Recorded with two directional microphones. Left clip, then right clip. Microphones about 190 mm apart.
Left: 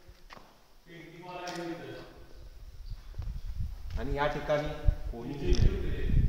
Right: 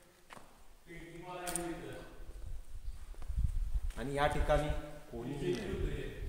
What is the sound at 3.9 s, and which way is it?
Speech, 45° right (ahead or behind).